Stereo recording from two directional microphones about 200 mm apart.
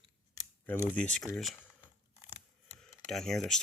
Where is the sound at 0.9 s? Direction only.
5° left (ahead or behind).